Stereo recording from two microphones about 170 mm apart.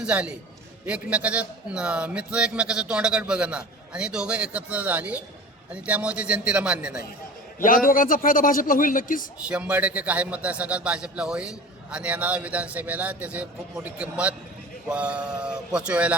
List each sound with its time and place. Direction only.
0.0 s a man's voice: 5° right (ahead or behind)
7.6 s a man's voice: 55° left (ahead or behind)
9.5 s a man's voice: 10° right (ahead or behind)